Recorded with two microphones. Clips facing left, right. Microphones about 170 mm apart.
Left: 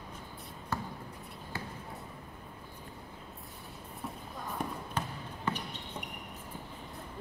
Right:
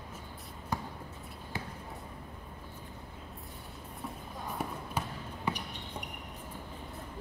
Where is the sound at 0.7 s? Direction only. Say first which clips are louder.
Even; 15° right (ahead or behind).